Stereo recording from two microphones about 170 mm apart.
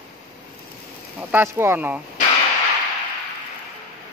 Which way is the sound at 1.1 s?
15° right (ahead or behind).